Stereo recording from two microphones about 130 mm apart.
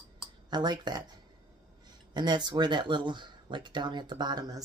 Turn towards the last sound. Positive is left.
turn(degrees=-30)  # may be behind; listen again after turning